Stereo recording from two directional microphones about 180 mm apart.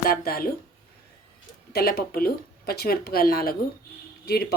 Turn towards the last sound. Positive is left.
turn(degrees=60)  # may be behind; listen again after turning